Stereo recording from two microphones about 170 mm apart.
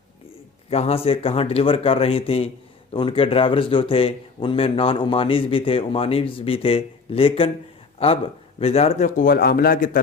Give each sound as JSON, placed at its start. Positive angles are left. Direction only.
{"t": 0.7, "sound": "speech", "side_deg": 35}